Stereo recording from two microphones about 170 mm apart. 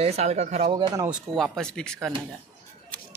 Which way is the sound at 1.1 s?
Centre (ahead or behind).